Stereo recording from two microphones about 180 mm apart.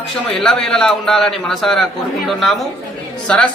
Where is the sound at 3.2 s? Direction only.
5° left (ahead or behind).